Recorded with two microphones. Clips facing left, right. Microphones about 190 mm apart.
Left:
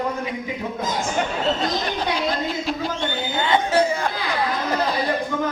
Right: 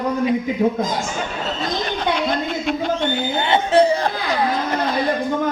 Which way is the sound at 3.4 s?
25° right (ahead or behind).